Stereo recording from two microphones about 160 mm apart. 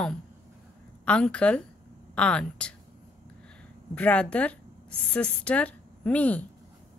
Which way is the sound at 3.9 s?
5° left (ahead or behind).